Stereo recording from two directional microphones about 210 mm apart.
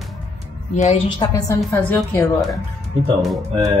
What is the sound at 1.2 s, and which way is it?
Speech, 15° left (ahead or behind).